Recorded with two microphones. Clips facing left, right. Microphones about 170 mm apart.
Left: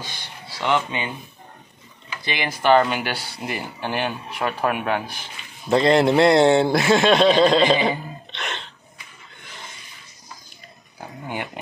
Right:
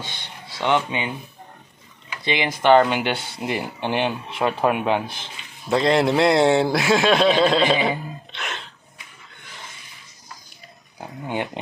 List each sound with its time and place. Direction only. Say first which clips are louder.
0.0 s speech: even; 25° right (ahead or behind)
2.2 s speech: right 2 dB; 20° right (ahead or behind)
5.7 s a man's voice: left 2 dB; centre (ahead or behind)
11.0 s speech: right 3 dB; 20° right (ahead or behind)